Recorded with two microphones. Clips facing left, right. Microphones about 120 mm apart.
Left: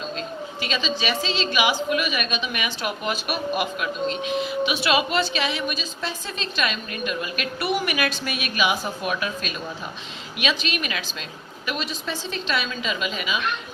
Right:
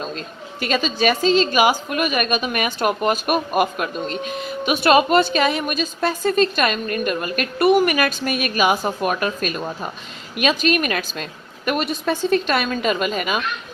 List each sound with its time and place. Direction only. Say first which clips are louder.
0.0 s a woman's voice: even; 50° right (ahead or behind)